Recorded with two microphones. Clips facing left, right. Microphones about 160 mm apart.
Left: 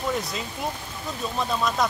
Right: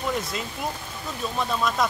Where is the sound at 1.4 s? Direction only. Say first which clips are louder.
Even; centre (ahead or behind).